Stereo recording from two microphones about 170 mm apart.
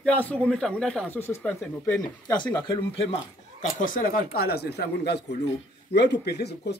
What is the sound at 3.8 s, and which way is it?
Speech, 55° left (ahead or behind).